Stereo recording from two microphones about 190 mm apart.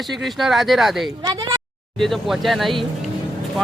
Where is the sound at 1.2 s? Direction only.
20° right (ahead or behind).